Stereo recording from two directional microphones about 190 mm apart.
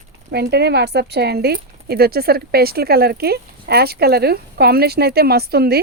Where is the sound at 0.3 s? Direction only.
60° right (ahead or behind).